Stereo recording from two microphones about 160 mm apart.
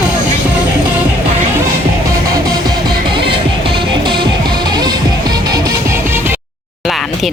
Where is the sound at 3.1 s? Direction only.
30° right (ahead or behind); by 6.4 s 15° right (ahead or behind).